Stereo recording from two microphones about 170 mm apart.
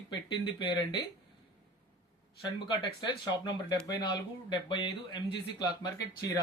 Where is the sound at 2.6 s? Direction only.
25° left (ahead or behind).